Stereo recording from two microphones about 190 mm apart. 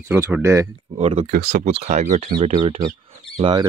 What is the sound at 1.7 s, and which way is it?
Speech, 35° right (ahead or behind).